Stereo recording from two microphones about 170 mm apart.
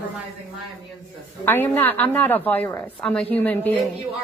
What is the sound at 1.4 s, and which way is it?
A woman's voice, 10° left (ahead or behind).